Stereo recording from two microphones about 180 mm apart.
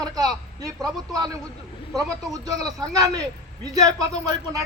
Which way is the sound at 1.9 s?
20° right (ahead or behind).